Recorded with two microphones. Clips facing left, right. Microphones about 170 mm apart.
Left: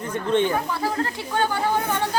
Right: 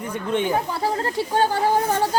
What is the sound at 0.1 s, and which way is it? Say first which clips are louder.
Speech: left 2 dB; 10° right (ahead or behind).